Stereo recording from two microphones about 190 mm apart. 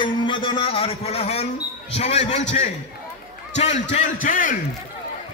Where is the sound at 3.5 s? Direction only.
35° left (ahead or behind).